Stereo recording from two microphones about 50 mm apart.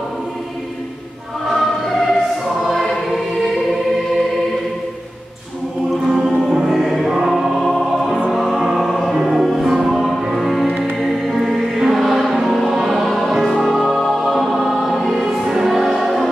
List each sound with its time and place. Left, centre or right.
1.4 s choir: centre
6.0 s music: centre